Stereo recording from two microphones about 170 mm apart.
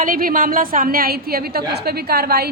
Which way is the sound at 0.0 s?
55° right (ahead or behind).